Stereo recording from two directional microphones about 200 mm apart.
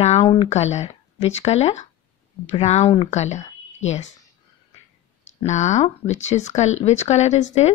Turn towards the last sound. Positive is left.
turn(degrees=35)  # may be behind; listen again after turning